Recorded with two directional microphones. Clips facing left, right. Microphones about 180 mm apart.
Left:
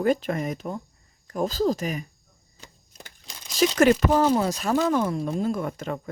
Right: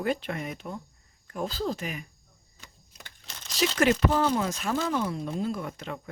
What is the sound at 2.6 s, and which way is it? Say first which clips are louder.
Typewriter: left 4 dB; 35° left (ahead or behind).